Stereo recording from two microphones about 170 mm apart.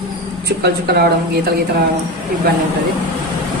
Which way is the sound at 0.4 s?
70° right (ahead or behind).